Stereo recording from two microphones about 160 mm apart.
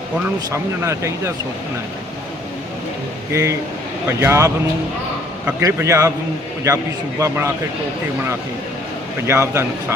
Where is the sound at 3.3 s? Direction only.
20° right (ahead or behind).